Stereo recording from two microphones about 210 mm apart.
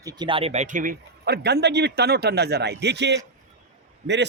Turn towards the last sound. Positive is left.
turn(degrees=-55)  # may be behind; listen again after turning